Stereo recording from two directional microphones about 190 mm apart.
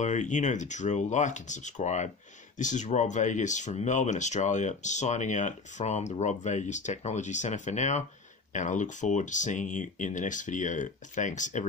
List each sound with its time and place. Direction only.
0.0 s speech: 40° left (ahead or behind)